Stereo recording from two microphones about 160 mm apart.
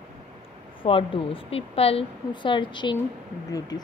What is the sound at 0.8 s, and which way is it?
A woman's voice, 35° left (ahead or behind).